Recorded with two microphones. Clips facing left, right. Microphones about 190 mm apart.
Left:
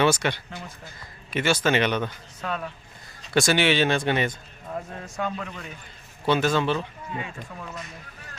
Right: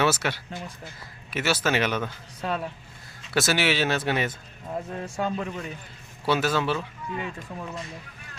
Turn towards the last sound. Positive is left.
turn(degrees=-30)  # may be behind; listen again after turning